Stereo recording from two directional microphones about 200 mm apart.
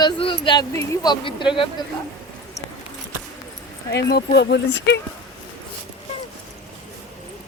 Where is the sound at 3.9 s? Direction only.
55° left (ahead or behind).